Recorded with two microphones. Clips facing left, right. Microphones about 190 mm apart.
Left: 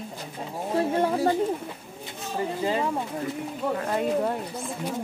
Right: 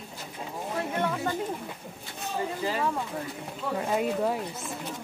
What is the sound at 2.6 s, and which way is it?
Speech, 20° left (ahead or behind).